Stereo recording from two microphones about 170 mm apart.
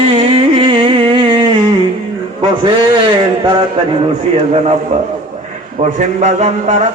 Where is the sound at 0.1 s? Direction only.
35° right (ahead or behind).